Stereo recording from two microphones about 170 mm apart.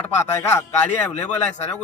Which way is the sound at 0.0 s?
15° left (ahead or behind).